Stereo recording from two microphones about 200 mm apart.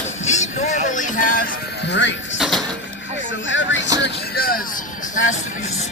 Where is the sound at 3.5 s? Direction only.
70° left (ahead or behind).